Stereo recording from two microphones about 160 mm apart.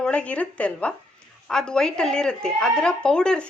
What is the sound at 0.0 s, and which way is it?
Speech, 5° left (ahead or behind).